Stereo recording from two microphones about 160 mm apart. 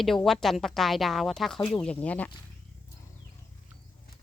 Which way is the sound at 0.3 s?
Centre (ahead or behind).